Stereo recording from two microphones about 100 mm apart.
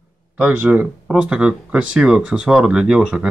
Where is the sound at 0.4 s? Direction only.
15° right (ahead or behind).